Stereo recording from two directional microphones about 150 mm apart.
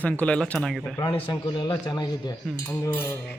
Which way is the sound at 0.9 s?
30° left (ahead or behind).